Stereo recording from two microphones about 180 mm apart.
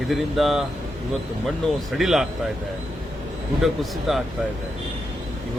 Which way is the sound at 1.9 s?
Centre (ahead or behind).